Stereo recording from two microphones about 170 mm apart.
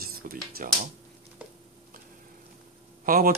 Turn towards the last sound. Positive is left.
turn(degrees=-60)  # may be behind; listen again after turning